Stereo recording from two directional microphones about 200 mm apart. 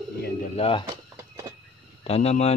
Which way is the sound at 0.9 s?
15° right (ahead or behind).